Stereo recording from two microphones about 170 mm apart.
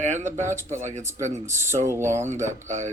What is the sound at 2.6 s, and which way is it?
Speech, 45° right (ahead or behind).